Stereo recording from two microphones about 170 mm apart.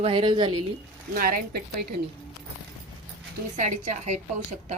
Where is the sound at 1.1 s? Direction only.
55° right (ahead or behind).